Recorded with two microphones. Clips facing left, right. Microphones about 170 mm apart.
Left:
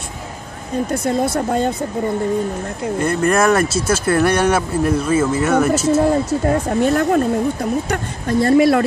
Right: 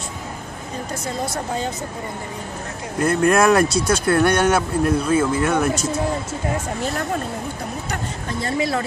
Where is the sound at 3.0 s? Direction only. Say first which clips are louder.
Even; centre (ahead or behind).